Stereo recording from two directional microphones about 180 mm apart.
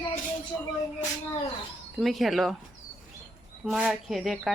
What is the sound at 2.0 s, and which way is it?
Speech, centre (ahead or behind).